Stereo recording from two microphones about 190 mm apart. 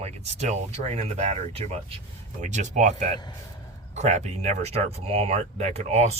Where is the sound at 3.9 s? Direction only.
35° right (ahead or behind).